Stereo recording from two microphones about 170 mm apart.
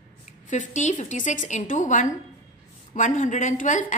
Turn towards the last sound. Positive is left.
turn(degrees=45)  # may be behind; listen again after turning